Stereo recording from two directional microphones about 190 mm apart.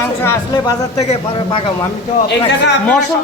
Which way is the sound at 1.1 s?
25° left (ahead or behind).